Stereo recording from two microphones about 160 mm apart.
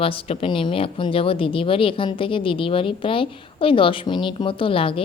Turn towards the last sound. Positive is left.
turn(degrees=35)  # may be behind; listen again after turning